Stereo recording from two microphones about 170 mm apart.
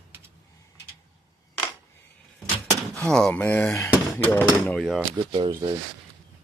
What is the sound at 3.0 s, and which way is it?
Speech, 5° left (ahead or behind).